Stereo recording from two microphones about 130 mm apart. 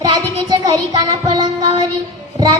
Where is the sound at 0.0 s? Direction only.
30° right (ahead or behind).